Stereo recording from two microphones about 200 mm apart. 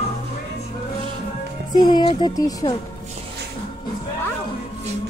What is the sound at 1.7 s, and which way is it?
Speech, 20° left (ahead or behind).